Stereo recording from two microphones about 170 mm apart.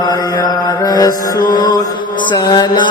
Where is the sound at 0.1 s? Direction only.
20° left (ahead or behind).